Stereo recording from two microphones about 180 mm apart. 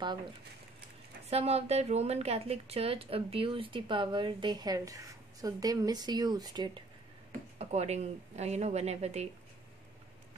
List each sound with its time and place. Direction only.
0.0 s a woman's voice: 25° right (ahead or behind)
1.3 s a woman's voice: 35° right (ahead or behind)
7.5 s a woman's voice: 40° right (ahead or behind)